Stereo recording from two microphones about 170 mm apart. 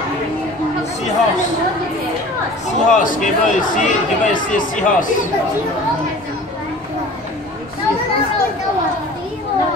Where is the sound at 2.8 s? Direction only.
50° left (ahead or behind).